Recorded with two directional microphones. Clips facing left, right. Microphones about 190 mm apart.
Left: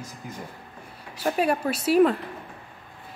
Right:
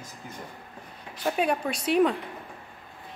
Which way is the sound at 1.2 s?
5° left (ahead or behind).